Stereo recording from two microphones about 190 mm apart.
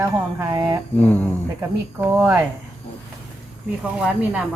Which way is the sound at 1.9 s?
10° right (ahead or behind).